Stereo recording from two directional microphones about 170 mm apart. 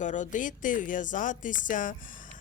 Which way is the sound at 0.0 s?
45° left (ahead or behind).